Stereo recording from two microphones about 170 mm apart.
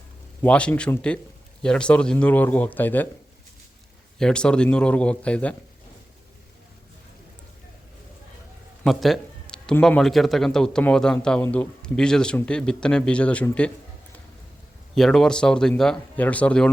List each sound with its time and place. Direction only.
0.4 s speech: 5° left (ahead or behind)
4.2 s speech: 5° left (ahead or behind)
8.8 s a man's voice: centre (ahead or behind)
14.9 s a man's voice: centre (ahead or behind)